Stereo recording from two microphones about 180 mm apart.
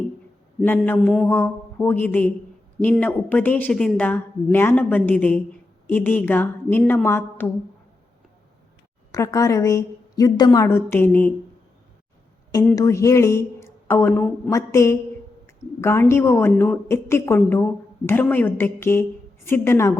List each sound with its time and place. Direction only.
0.6 s a woman's voice: 10° left (ahead or behind)
1.0 s mantra: centre (ahead or behind)
1.3 s a woman's voice: 10° left (ahead or behind)
9.1 s a woman's voice: 20° left (ahead or behind)
12.7 s a woman's voice: 20° left (ahead or behind)